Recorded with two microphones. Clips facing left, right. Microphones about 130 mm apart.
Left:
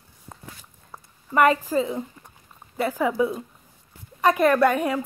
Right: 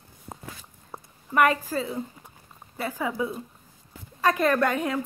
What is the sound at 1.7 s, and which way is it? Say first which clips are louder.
A woman's voice: left 5 dB; 15° left (ahead or behind).